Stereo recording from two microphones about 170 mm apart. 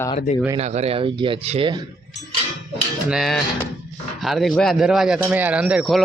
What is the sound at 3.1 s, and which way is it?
Speech, centre (ahead or behind).